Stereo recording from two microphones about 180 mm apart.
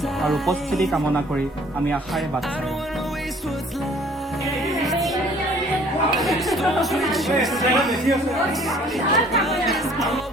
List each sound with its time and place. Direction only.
0.2 s speech: centre (ahead or behind)
4.7 s speech: centre (ahead or behind)
6.1 s speech: centre (ahead or behind)
9.1 s speech: centre (ahead or behind)